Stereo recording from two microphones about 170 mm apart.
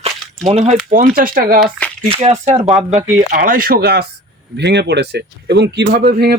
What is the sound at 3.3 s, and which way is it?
Speech, 55° right (ahead or behind).